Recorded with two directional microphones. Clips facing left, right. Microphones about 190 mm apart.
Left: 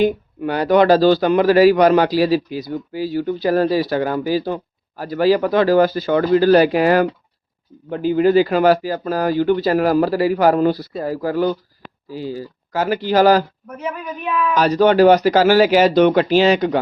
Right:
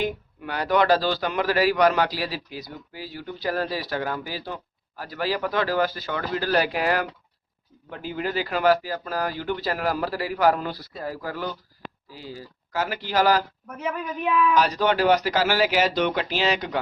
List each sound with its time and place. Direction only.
0.0 s a man's voice: 30° left (ahead or behind)
12.7 s speech: 30° left (ahead or behind)
14.5 s a man's voice: 40° left (ahead or behind)